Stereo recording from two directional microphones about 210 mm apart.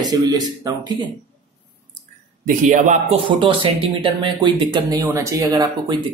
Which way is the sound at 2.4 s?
40° right (ahead or behind).